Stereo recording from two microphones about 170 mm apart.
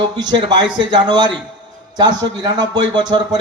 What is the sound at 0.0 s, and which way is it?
A man's voice, 25° right (ahead or behind).